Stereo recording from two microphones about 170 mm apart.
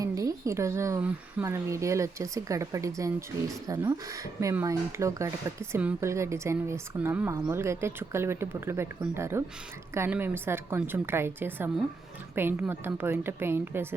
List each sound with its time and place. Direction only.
0.0 s speech: 20° right (ahead or behind)